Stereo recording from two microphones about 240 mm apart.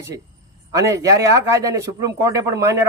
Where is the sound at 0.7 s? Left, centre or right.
Centre.